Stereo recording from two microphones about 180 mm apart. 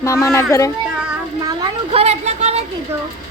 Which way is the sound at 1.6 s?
35° right (ahead or behind).